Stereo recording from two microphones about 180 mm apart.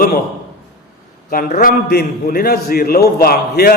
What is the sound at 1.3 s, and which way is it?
A man's voice, 50° left (ahead or behind).